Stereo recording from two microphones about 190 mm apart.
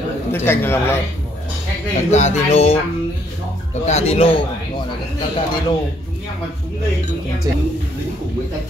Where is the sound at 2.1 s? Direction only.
35° left (ahead or behind).